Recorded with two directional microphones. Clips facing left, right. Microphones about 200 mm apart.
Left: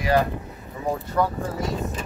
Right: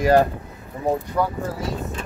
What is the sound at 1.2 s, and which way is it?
Speech, 10° right (ahead or behind).